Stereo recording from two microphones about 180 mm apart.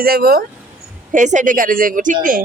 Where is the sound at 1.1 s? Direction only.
45° right (ahead or behind).